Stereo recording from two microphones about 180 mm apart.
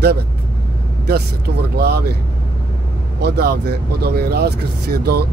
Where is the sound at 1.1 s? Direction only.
60° right (ahead or behind).